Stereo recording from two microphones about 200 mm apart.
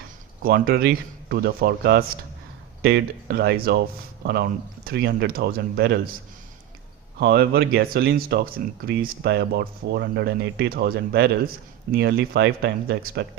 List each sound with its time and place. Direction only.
0.4 s speech: 50° right (ahead or behind)
7.2 s speech: 55° right (ahead or behind)